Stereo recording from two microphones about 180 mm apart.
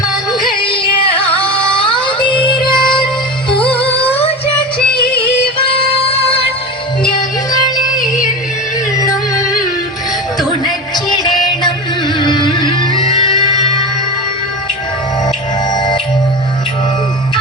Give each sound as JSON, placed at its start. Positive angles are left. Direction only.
{"t": 0.3, "sound": "music", "side_deg": 25}
{"t": 1.4, "sound": "a sound", "side_deg": 30}
{"t": 2.4, "sound": "music", "side_deg": 25}
{"t": 3.8, "sound": "music", "side_deg": 35}
{"t": 5.9, "sound": "music", "side_deg": 30}
{"t": 8.0, "sound": "music", "side_deg": -5}
{"t": 10.9, "sound": "music", "side_deg": 25}
{"t": 15.7, "sound": "music", "side_deg": 25}